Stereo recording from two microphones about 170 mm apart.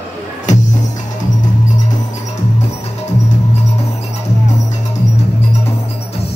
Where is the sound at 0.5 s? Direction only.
45° left (ahead or behind).